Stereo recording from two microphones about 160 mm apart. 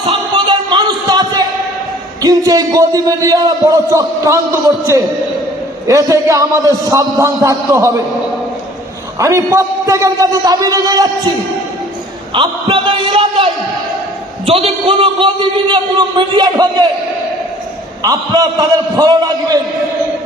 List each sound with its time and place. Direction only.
0.3 s a sound: 30° right (ahead or behind)
2.2 s a man's voice: 25° right (ahead or behind)
5.9 s a man's voice: 20° right (ahead or behind)
9.1 s a man's voice: 20° right (ahead or behind)
12.3 s a sound: 30° right (ahead or behind)
14.4 s a man's voice: 35° right (ahead or behind)
18.0 s a man's voice: 25° right (ahead or behind)